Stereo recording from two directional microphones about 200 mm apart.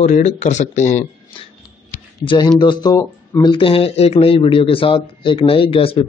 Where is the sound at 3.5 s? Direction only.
25° left (ahead or behind).